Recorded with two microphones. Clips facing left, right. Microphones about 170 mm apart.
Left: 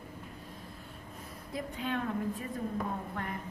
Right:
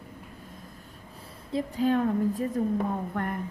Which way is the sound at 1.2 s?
30° right (ahead or behind).